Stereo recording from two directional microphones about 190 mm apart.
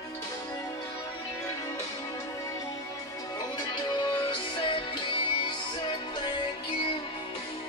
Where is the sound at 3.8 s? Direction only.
25° left (ahead or behind).